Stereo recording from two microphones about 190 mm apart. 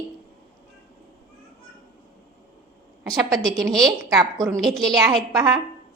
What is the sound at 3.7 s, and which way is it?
Speech, centre (ahead or behind).